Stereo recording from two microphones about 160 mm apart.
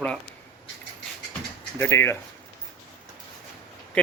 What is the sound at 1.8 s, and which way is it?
Speech, 15° left (ahead or behind).